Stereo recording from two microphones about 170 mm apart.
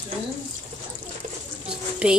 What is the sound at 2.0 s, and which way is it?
Speech, 5° right (ahead or behind).